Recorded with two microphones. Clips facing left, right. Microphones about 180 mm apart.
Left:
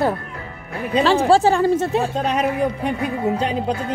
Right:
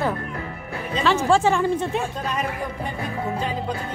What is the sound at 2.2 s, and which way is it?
Speech, 75° left (ahead or behind).